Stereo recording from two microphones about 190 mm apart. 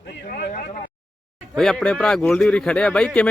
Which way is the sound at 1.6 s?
5° left (ahead or behind).